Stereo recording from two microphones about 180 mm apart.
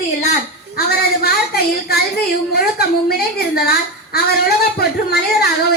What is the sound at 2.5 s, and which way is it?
Speech, 60° left (ahead or behind).